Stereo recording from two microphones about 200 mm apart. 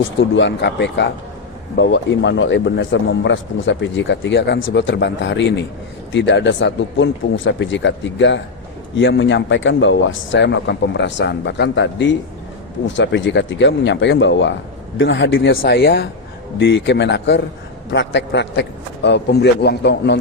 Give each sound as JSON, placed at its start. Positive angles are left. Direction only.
{"t": 0.2, "sound": "a man's voice", "side_deg": 65}